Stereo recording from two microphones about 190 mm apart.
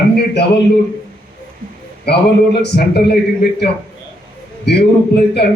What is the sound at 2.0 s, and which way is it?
A man's voice, 60° left (ahead or behind).